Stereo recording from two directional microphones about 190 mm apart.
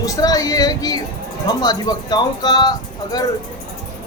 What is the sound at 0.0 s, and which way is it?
A man's voice, 20° left (ahead or behind).